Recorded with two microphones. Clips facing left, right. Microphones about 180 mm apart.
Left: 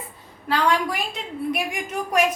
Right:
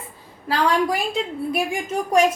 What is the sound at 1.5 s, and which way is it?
Speech, 30° right (ahead or behind).